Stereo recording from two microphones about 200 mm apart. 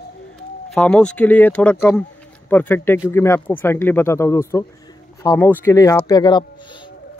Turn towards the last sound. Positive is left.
turn(degrees=20)  # may be behind; listen again after turning